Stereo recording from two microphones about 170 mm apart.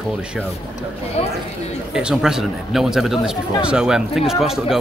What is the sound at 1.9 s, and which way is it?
Speech, 5° right (ahead or behind).